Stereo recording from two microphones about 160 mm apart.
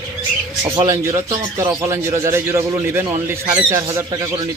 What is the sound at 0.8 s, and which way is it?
Speech, 20° right (ahead or behind).